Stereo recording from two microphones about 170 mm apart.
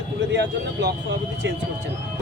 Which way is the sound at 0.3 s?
80° right.